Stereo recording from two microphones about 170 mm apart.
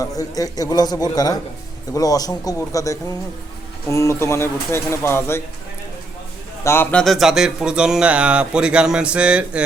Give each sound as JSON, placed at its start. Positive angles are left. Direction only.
{"t": 0.0, "sound": "a man's voice", "side_deg": 20}
{"t": 6.7, "sound": "speech", "side_deg": 15}
{"t": 7.0, "sound": "speech", "side_deg": 0}